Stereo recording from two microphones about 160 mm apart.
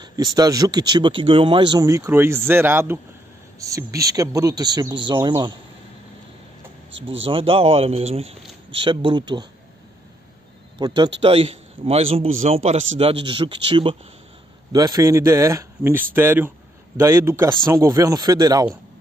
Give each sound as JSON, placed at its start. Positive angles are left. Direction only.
{"t": 0.0, "sound": "speech", "side_deg": -25}
{"t": 7.2, "sound": "a man's voice", "side_deg": -35}
{"t": 10.8, "sound": "a man's voice", "side_deg": -30}